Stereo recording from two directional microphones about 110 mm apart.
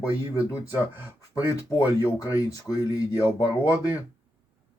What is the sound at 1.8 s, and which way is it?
Speech, 30° left (ahead or behind).